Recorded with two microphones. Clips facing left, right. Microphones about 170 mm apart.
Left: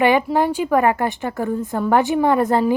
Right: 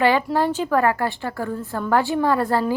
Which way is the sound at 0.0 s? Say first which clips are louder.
Left 2 dB; 15° left (ahead or behind).